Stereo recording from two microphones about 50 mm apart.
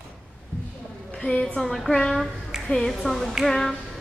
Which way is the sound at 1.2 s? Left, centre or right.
Centre.